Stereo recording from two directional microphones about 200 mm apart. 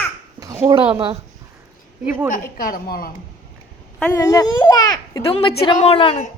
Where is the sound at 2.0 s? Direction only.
10° right (ahead or behind).